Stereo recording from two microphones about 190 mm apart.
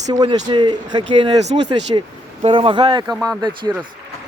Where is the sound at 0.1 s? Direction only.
20° right (ahead or behind).